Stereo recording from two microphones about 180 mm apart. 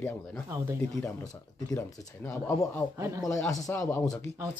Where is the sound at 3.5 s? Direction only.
15° left (ahead or behind).